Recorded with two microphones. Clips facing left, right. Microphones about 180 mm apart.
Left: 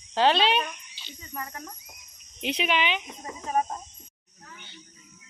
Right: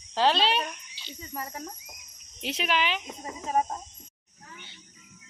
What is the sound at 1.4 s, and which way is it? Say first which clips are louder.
Speech: right 2 dB; 25° right (ahead or behind).